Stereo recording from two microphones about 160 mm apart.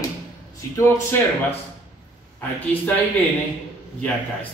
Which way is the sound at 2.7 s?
10° left (ahead or behind).